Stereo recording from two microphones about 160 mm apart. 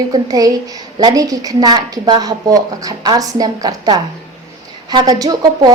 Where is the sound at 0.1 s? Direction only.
25° right (ahead or behind).